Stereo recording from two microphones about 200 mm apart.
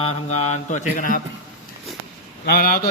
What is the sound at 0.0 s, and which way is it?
Mantra, 30° left (ahead or behind).